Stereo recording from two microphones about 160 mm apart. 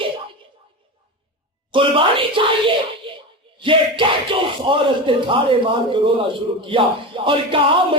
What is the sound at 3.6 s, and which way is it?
Speech, 30° right (ahead or behind).